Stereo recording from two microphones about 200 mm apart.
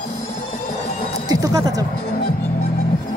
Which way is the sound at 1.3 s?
15° right (ahead or behind).